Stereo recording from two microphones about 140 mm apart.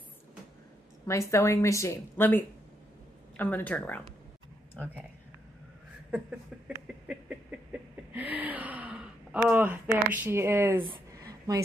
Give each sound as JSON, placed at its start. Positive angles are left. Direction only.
{"t": 1.0, "sound": "a woman's voice", "side_deg": 20}
{"t": 8.1, "sound": "gasp", "side_deg": -10}
{"t": 10.0, "sound": "speech", "side_deg": -10}
{"t": 10.8, "sound": "a sound", "side_deg": -30}